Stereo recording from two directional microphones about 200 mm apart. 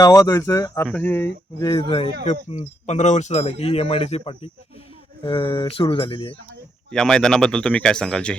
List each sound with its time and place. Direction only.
0.0 s speech: 15° left (ahead or behind)
1.6 s speech: 25° left (ahead or behind)
6.9 s speech: 5° left (ahead or behind)